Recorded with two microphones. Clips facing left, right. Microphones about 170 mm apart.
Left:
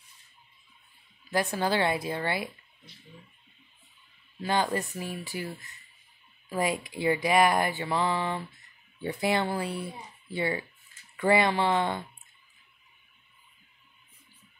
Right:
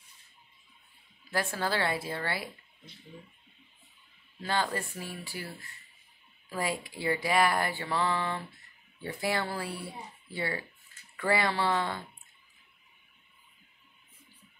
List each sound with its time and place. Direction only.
1.3 s speech: 15° left (ahead or behind)
4.4 s speech: 15° left (ahead or behind)